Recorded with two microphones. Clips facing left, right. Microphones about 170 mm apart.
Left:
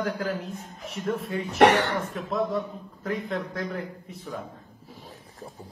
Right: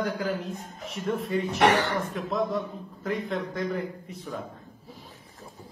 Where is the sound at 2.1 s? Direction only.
Centre (ahead or behind).